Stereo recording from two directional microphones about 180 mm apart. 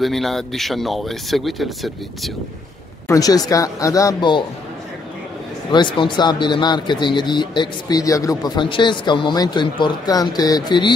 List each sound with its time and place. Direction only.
0.0 s speech: centre (ahead or behind)
3.1 s speech: 20° left (ahead or behind)
5.7 s speech: 25° left (ahead or behind)